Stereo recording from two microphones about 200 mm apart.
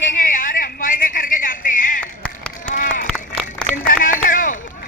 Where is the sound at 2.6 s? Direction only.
40° left (ahead or behind).